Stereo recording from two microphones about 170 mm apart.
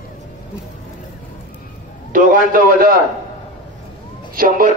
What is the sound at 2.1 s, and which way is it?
Speech, 55° right (ahead or behind).